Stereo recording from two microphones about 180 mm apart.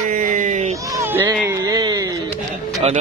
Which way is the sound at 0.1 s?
50° right (ahead or behind).